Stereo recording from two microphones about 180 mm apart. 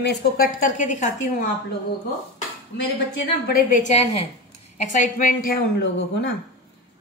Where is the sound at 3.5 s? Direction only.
45° left (ahead or behind); by 6.3 s 60° left (ahead or behind).